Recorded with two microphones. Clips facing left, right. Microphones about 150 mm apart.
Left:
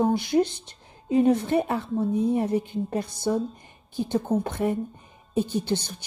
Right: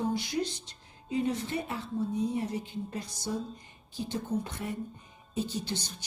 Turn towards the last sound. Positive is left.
turn(degrees=55)  # may be behind; listen again after turning